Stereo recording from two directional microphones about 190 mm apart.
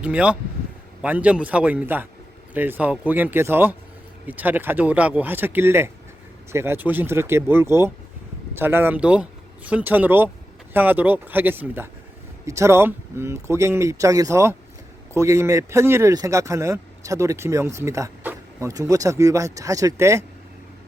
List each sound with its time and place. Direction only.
0.0 s speech: 5° right (ahead or behind)